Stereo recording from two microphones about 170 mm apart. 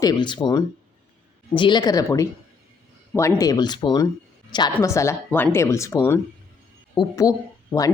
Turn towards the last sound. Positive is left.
turn(degrees=20)  # may be behind; listen again after turning